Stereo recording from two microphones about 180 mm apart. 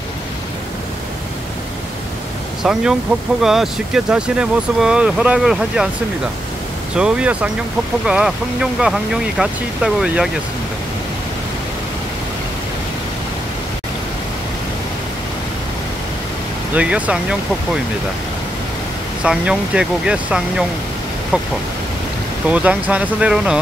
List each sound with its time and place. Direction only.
2.6 s speech: 5° right (ahead or behind)
7.0 s speech: 5° right (ahead or behind)
16.7 s speech: 5° right (ahead or behind)
19.2 s speech: 5° right (ahead or behind)
22.5 s speech: 10° right (ahead or behind)